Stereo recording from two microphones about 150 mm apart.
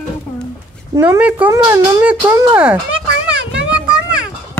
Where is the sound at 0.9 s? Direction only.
15° right (ahead or behind).